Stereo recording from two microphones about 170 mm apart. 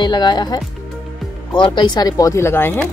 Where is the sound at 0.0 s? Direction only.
25° left (ahead or behind).